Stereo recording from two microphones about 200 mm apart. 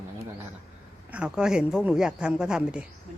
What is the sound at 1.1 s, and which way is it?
Speech, 5° right (ahead or behind).